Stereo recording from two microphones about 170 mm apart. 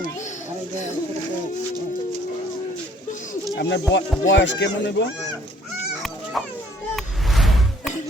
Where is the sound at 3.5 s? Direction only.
90° left.